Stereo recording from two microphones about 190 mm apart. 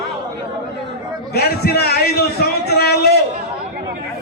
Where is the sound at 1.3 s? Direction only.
55° left (ahead or behind).